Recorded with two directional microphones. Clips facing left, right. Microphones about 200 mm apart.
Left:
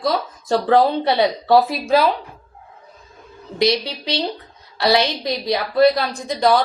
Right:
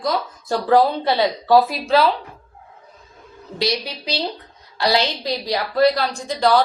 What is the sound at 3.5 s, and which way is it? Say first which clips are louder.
A woman's voice: left 5 dB; 20° left (ahead or behind).